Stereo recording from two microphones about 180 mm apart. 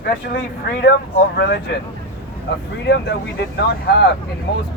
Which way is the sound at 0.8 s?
65° left (ahead or behind).